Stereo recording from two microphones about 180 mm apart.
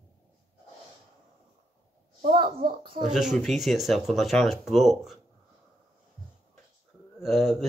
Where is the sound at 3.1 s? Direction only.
5° right (ahead or behind).